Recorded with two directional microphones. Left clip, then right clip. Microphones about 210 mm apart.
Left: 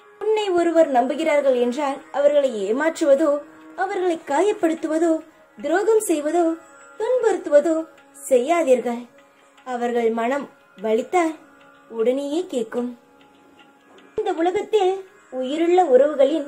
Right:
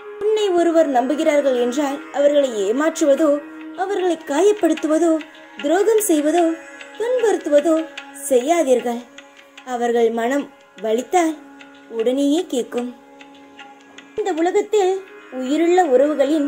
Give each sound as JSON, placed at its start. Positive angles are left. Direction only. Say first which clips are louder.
{"t": 0.3, "sound": "a woman's voice", "louder": "right 3 dB", "side_deg": -20}
{"t": 14.2, "sound": "speech", "louder": "right 3 dB", "side_deg": -35}